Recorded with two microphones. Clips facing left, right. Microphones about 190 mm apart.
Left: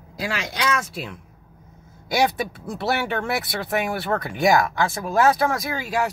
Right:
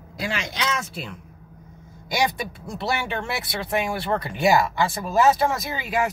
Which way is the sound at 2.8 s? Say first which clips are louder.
Left 3 dB; 15° right (ahead or behind).